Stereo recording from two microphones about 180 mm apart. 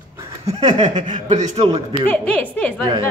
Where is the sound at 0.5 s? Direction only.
35° right (ahead or behind).